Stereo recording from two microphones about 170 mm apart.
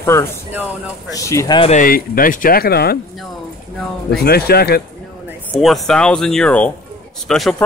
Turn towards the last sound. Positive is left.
turn(degrees=0)  # may be behind; listen again after turning